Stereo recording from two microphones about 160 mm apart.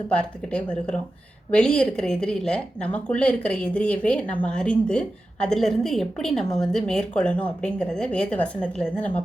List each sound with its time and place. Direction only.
0.1 s a woman's voice: 5° left (ahead or behind)